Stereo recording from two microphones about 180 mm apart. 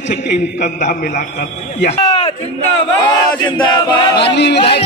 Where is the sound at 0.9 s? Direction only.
55° left (ahead or behind).